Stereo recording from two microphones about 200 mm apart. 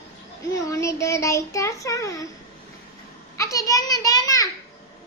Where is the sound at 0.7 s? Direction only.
15° left (ahead or behind).